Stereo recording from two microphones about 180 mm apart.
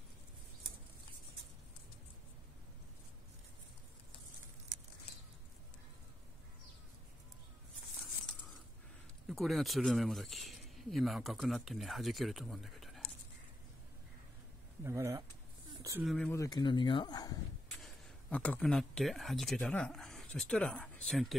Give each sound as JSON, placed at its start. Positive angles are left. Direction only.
{"t": 9.3, "sound": "speech", "side_deg": 0}
{"t": 14.8, "sound": "speech", "side_deg": -15}
{"t": 16.1, "sound": "speech", "side_deg": 5}
{"t": 16.3, "sound": "speech", "side_deg": 20}
{"t": 17.8, "sound": "speech", "side_deg": 5}